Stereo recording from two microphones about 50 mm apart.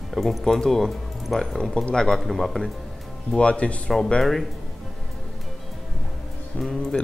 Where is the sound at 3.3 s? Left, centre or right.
Left.